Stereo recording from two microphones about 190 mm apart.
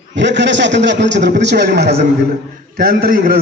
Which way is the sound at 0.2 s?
70° right (ahead or behind).